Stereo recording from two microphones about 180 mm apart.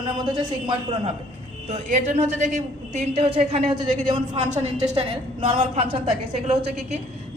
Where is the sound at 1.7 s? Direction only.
40° right (ahead or behind).